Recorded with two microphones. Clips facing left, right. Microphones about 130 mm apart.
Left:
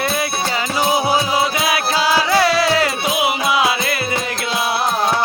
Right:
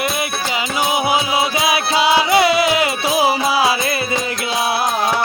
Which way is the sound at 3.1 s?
30° right (ahead or behind).